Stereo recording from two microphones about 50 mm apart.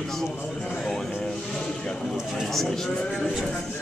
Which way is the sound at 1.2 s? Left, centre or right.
Centre.